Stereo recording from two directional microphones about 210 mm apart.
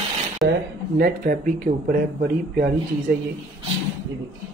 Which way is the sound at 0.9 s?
45° right (ahead or behind).